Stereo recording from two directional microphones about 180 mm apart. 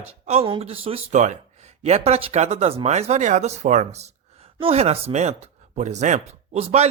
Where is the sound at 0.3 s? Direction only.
30° right (ahead or behind).